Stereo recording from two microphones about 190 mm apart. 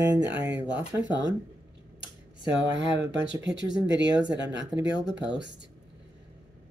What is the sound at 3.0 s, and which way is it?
Speech, 10° right (ahead or behind).